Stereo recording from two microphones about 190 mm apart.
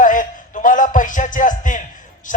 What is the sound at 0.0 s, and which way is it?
Music, 45° left (ahead or behind).